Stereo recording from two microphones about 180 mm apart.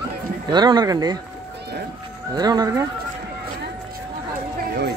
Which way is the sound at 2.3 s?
20° right (ahead or behind).